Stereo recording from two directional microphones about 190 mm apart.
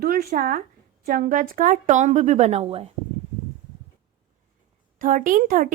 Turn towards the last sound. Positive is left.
turn(degrees=-45)  # may be behind; listen again after turning